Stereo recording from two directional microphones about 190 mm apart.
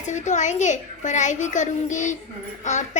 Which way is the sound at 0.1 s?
40° left (ahead or behind).